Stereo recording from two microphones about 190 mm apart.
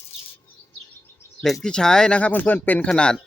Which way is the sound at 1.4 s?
Centre (ahead or behind).